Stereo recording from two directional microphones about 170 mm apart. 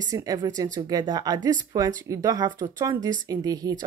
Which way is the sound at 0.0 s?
20° right (ahead or behind).